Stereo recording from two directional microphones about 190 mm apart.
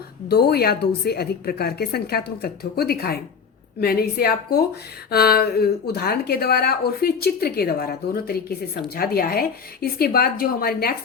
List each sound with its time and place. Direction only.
0.3 s a woman's voice: 55° left (ahead or behind)